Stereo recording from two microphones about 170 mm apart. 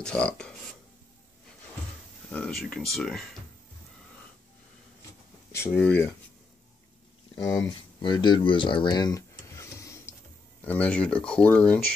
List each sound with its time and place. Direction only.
0.0 s speech: 5° left (ahead or behind)
2.3 s speech: 5° left (ahead or behind)
5.5 s speech: 10° left (ahead or behind)
7.3 s speech: 20° left (ahead or behind)